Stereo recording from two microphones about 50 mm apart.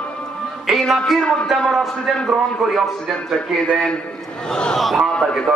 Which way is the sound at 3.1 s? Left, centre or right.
Left.